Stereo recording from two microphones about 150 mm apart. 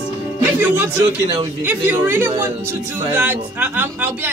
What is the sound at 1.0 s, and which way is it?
Speech, 25° right (ahead or behind).